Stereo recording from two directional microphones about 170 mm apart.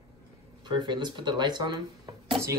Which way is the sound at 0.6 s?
25° right (ahead or behind).